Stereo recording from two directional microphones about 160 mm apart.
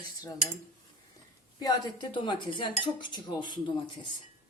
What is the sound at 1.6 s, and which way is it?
Speech, 25° left (ahead or behind).